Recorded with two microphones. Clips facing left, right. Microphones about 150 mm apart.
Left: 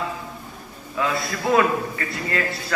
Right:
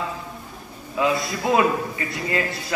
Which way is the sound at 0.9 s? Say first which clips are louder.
Right 2 dB; 20° right (ahead or behind).